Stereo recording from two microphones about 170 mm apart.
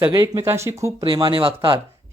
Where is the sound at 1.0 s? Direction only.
30° right (ahead or behind).